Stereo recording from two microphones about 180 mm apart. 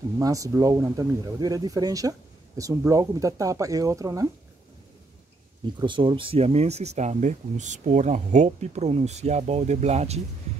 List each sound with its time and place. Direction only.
0.2 s speech: 20° right (ahead or behind)
5.8 s speech: 25° right (ahead or behind)